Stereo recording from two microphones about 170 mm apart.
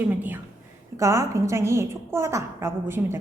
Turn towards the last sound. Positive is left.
turn(degrees=-15)  # may be behind; listen again after turning